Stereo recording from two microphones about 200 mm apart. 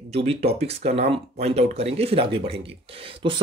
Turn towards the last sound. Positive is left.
turn(degrees=-25)  # may be behind; listen again after turning